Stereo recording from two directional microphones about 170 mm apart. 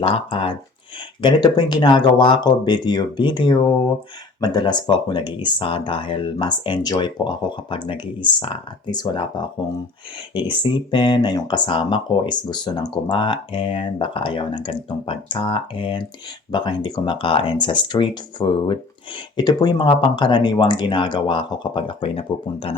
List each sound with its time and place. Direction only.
0.0 s speech: 30° left (ahead or behind)
10.5 s speech: 30° left (ahead or behind)